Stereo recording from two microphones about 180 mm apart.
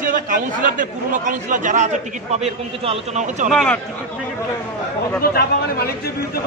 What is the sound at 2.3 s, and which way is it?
A man's voice, 35° right (ahead or behind).